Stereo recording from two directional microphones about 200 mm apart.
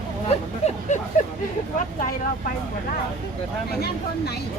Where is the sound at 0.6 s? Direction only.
30° left (ahead or behind).